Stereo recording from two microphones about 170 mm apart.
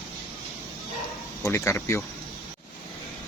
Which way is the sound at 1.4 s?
15° left (ahead or behind).